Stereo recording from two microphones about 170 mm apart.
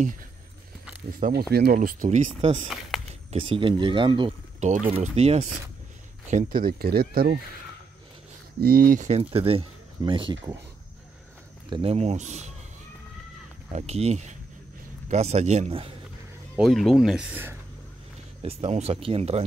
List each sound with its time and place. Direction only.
1.2 s speech: 70° right (ahead or behind)
2.0 s speech: 40° right (ahead or behind)
4.6 s speech: 45° right (ahead or behind)
6.2 s speech: 55° right (ahead or behind)
8.5 s speech: 60° right (ahead or behind); by 10.3 s 30° right (ahead or behind)
11.7 s speech: 35° right (ahead or behind)
13.7 s speech: 40° right (ahead or behind)
16.5 s speech: centre (ahead or behind)
18.4 s speech: 40° right (ahead or behind)